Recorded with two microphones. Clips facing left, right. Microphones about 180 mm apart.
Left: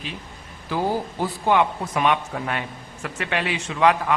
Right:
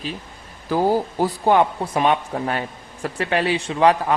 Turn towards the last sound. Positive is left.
turn(degrees=-35)  # may be behind; listen again after turning